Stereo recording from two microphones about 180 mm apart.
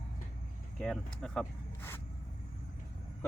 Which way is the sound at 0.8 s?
5° left (ahead or behind).